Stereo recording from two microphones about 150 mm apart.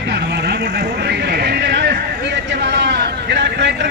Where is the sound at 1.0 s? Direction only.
90° right.